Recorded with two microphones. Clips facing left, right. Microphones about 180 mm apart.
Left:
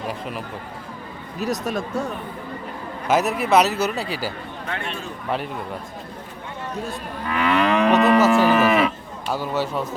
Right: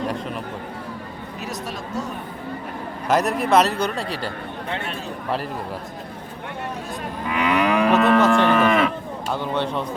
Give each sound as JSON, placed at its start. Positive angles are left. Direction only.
{"t": 1.4, "sound": "speech", "side_deg": 45}
{"t": 3.1, "sound": "speech", "side_deg": 0}
{"t": 7.3, "sound": "moo", "side_deg": -15}
{"t": 7.9, "sound": "cattle", "side_deg": 0}
{"t": 9.3, "sound": "speech", "side_deg": 5}